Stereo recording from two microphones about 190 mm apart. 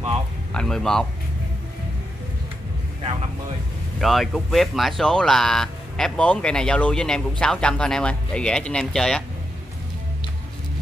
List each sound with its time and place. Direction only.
0.5 s speech: 5° left (ahead or behind)
4.0 s speech: centre (ahead or behind)